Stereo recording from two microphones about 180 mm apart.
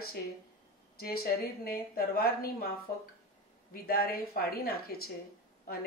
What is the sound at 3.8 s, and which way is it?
Speech, 55° left (ahead or behind).